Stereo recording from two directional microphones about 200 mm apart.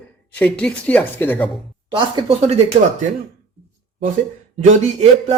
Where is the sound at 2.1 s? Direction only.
30° right (ahead or behind).